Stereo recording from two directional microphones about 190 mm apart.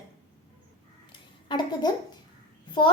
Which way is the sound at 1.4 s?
25° left (ahead or behind).